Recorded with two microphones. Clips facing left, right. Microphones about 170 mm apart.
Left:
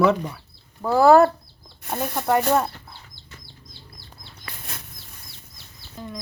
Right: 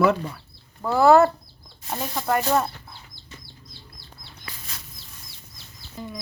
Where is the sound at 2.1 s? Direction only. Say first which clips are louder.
Left 2 dB; 10° left (ahead or behind).